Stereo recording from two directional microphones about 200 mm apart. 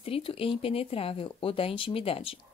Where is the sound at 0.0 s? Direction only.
30° left (ahead or behind).